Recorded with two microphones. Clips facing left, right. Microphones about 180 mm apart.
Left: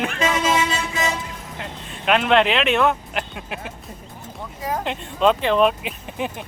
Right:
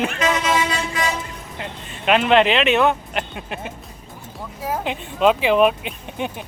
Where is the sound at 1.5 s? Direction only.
Centre (ahead or behind).